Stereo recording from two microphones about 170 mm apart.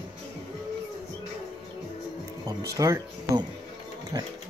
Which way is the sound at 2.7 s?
20° right (ahead or behind).